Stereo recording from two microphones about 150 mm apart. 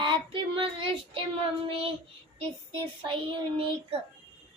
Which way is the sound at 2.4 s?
40° right (ahead or behind).